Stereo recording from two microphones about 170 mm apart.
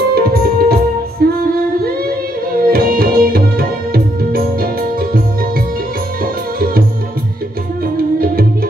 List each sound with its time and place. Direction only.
0.1 s music: 65° right (ahead or behind)
2.5 s music: 60° right (ahead or behind)
6.2 s music: 60° right (ahead or behind)